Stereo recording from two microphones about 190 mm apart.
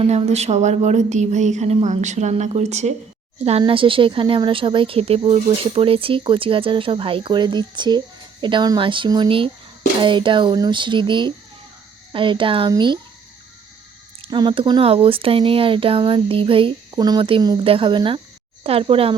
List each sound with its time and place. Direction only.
0.0 s speech: 30° right (ahead or behind)
14.2 s speech: 25° right (ahead or behind)